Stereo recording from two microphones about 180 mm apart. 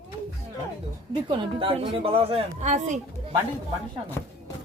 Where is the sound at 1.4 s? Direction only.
30° right (ahead or behind).